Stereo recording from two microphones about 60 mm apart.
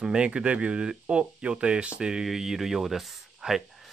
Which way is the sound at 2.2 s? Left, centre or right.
Centre.